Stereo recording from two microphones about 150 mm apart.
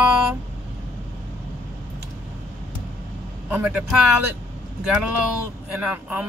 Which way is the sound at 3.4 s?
10° right (ahead or behind).